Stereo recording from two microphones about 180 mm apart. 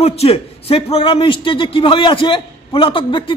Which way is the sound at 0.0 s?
35° left (ahead or behind).